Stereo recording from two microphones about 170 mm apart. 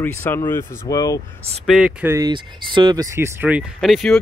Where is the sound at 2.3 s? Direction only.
25° right (ahead or behind).